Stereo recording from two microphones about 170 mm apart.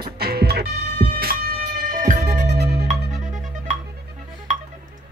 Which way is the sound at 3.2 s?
50° right (ahead or behind).